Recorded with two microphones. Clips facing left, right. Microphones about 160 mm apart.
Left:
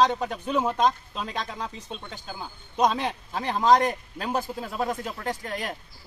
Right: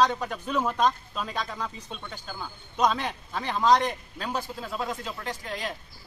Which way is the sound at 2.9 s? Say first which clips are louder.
Left 3 dB; 35° left (ahead or behind).